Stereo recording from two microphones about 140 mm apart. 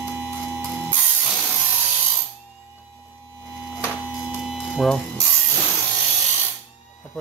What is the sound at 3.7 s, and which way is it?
Hum, 10° right (ahead or behind).